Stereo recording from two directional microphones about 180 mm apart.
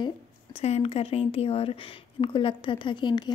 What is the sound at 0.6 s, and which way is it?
Speech, 35° left (ahead or behind).